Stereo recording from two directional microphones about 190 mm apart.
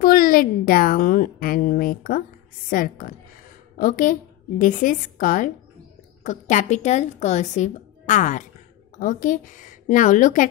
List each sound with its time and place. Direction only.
0.0 s a woman's voice: 50° left (ahead or behind)